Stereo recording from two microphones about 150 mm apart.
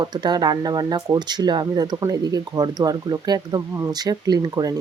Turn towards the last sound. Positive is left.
turn(degrees=-25)  # may be behind; listen again after turning